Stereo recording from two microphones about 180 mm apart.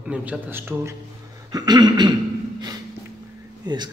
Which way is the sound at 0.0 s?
5° right (ahead or behind).